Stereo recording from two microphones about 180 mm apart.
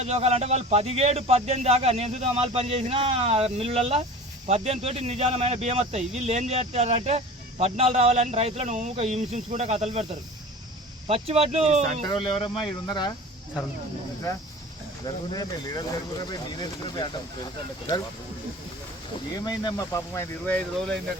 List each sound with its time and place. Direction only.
0.0 s speech: 35° right (ahead or behind)
12.0 s speech: 25° left (ahead or behind)
15.0 s speech: 20° left (ahead or behind)
19.3 s speech: 20° left (ahead or behind)